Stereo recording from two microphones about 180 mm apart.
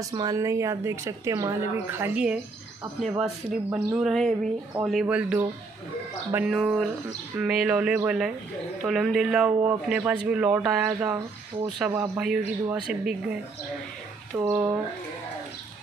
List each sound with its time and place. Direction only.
0.0 s speech: 20° right (ahead or behind)
3.7 s speech: 5° right (ahead or behind)
14.4 s speech: 5° right (ahead or behind)